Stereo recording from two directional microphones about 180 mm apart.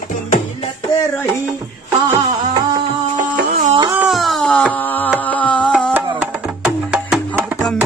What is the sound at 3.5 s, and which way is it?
Music, 40° right (ahead or behind).